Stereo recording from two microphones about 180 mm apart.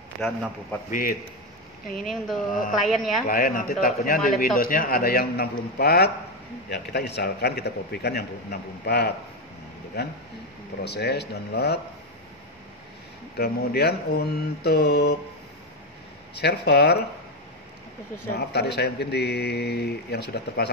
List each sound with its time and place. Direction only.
0.2 s speech: centre (ahead or behind)
0.8 s speech: 50° left (ahead or behind)
2.0 s speech: centre (ahead or behind)
2.5 s speech: 45° left (ahead or behind)
2.9 s speech: centre (ahead or behind)
3.3 s a man's voice: 50° left (ahead or behind)
13.4 s a man's voice: 60° left (ahead or behind)
16.3 s a man's voice: 65° left (ahead or behind)
18.3 s a man's voice: 65° left (ahead or behind)